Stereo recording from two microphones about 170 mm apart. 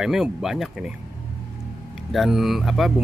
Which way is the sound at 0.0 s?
5° right (ahead or behind).